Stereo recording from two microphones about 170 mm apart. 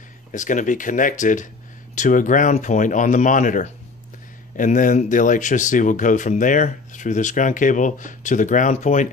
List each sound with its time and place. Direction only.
0.3 s speech: 50° left (ahead or behind)